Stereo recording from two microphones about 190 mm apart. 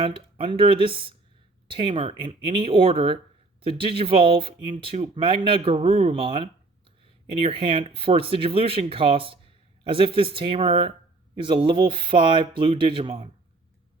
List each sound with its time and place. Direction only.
0.0 s speech: 30° right (ahead or behind)